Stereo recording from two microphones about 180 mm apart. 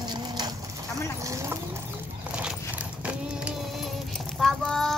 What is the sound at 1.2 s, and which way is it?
Clip-clop, 15° right (ahead or behind).